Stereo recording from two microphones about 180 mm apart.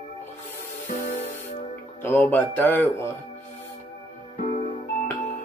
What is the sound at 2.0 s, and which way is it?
Speech, 10° left (ahead or behind).